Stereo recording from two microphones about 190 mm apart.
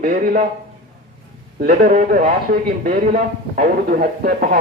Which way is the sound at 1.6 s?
50° right (ahead or behind).